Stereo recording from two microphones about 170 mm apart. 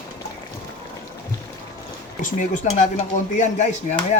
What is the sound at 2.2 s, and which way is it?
Speech, 50° left (ahead or behind).